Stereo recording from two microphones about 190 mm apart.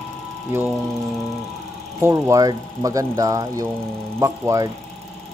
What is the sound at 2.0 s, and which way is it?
Speech, 15° right (ahead or behind).